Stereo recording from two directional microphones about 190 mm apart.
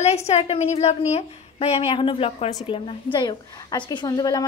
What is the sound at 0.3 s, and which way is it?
A woman's voice, 35° left (ahead or behind).